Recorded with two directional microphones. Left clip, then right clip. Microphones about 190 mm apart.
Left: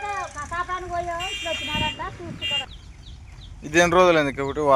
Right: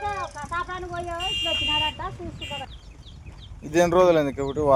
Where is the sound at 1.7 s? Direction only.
35° right (ahead or behind).